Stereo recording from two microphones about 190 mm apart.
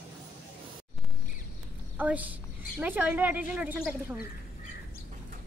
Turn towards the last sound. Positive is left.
turn(degrees=-10)  # may be behind; listen again after turning